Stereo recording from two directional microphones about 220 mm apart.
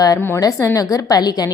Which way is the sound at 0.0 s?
15° left (ahead or behind).